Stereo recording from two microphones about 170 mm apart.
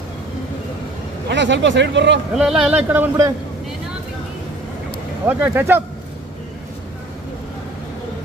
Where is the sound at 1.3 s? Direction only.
90° right.